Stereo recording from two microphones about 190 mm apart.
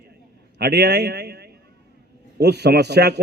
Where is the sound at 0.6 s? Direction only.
60° right (ahead or behind).